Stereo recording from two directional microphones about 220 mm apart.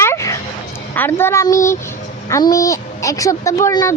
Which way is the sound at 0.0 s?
15° left (ahead or behind).